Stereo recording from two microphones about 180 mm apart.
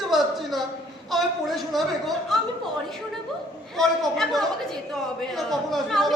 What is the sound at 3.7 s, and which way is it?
Speech, centre (ahead or behind).